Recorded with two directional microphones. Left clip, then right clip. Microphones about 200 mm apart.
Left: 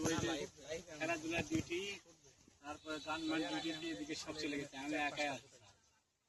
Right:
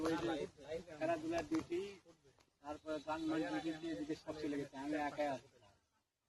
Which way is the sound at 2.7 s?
30° right (ahead or behind).